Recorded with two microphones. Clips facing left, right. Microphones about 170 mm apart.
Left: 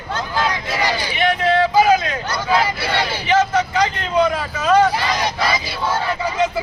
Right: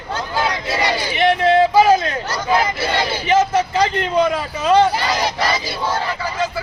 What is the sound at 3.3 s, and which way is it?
Speech, 30° right (ahead or behind).